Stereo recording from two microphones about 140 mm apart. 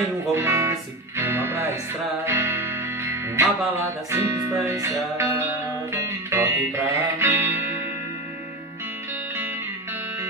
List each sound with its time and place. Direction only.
0.0 s music: 20° right (ahead or behind)